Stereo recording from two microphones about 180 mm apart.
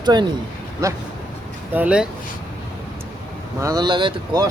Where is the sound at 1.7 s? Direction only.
5° right (ahead or behind).